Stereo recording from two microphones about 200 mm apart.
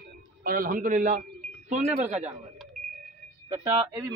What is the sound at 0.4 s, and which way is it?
A man's voice, 45° right (ahead or behind).